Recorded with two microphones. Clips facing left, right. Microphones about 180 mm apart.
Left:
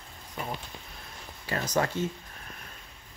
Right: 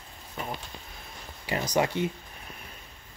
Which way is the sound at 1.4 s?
15° right (ahead or behind).